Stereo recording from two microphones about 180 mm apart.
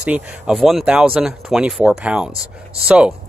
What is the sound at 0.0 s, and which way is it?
Speech, 5° right (ahead or behind).